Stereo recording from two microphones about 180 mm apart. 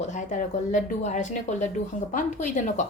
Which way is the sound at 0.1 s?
45° left (ahead or behind).